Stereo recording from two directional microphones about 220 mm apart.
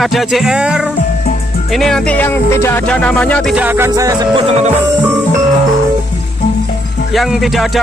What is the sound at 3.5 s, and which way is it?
Music, 10° right (ahead or behind).